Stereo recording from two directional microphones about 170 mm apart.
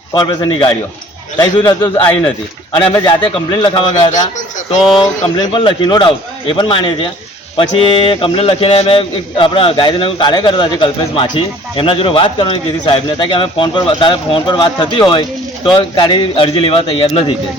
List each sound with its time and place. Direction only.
0.1 s a man's voice: 25° left (ahead or behind)